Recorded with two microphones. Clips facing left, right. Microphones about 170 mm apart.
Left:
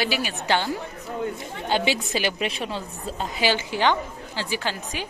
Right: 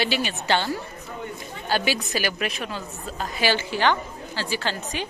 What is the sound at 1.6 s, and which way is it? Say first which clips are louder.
A woman's voice: left 1 dB; 25° left (ahead or behind).